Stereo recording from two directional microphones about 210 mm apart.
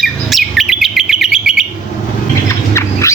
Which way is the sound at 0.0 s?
Centre (ahead or behind).